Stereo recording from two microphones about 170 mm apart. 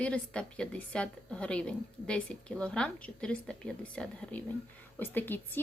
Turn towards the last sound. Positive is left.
turn(degrees=10)  # may be behind; listen again after turning